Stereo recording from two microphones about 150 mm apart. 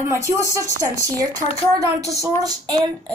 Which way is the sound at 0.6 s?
25° right (ahead or behind).